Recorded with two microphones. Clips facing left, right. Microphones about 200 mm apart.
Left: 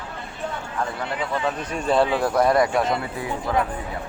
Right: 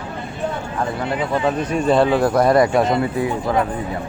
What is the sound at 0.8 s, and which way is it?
Speech, 15° right (ahead or behind).